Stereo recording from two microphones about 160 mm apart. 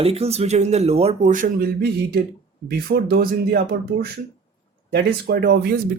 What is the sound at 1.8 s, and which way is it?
Speech, 80° right.